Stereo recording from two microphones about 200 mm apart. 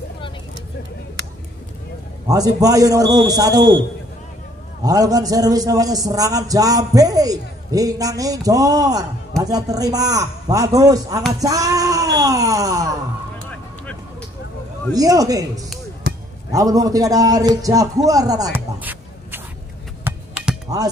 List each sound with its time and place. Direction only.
2.2 s a man's voice: 20° right (ahead or behind)
4.8 s a man's voice: 20° right (ahead or behind)
14.9 s a man's voice: 20° right (ahead or behind)
20.0 s a sound: 10° right (ahead or behind)